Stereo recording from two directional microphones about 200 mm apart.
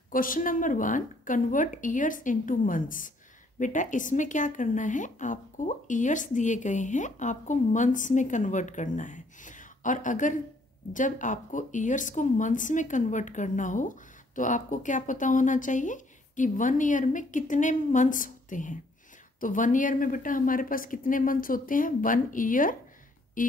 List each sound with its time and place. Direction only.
0.1 s a woman's voice: 45° left (ahead or behind)